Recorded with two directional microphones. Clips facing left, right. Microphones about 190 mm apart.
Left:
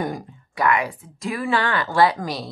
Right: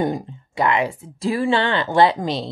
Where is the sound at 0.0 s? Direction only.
25° right (ahead or behind).